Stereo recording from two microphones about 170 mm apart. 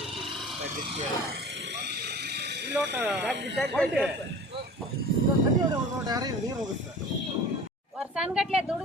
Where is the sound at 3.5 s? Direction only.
5° left (ahead or behind).